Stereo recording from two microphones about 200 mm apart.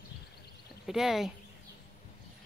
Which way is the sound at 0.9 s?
Centre (ahead or behind).